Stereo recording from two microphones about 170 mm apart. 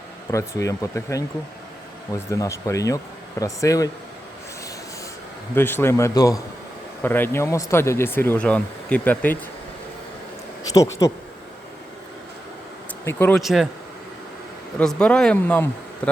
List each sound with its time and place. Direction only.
0.3 s speech: 20° left (ahead or behind)
5.5 s speech: 15° left (ahead or behind)
10.6 s speech: 20° left (ahead or behind)
13.1 s speech: 10° left (ahead or behind)
13.4 s speech: centre (ahead or behind)
14.8 s speech: 5° left (ahead or behind)